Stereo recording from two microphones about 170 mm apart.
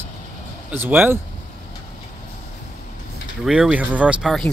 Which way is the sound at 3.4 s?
5° right (ahead or behind).